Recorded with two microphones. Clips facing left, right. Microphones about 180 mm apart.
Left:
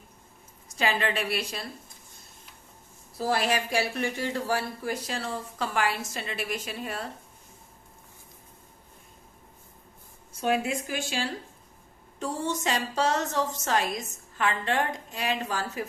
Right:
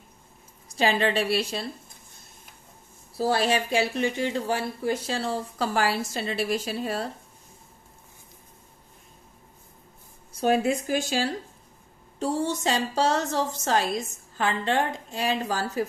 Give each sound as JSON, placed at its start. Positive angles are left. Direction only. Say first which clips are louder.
{"t": 0.7, "sound": "a woman's voice", "louder": "right 4 dB", "side_deg": -30}
{"t": 3.2, "sound": "speech", "louder": "right 3 dB", "side_deg": -30}
{"t": 10.4, "sound": "speech", "louder": "right 4 dB", "side_deg": -40}